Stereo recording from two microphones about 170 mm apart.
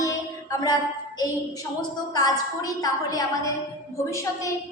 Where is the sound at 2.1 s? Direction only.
20° left (ahead or behind).